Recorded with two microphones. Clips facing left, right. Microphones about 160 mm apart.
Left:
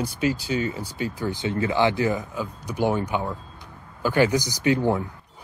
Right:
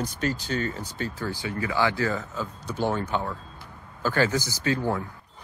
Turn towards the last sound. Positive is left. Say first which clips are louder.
# left 5 dB
turn(degrees=20)  # may be behind; listen again after turning